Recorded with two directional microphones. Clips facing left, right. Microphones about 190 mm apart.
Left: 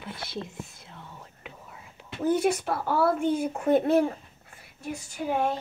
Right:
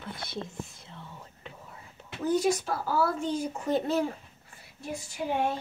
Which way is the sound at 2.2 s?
55° left (ahead or behind).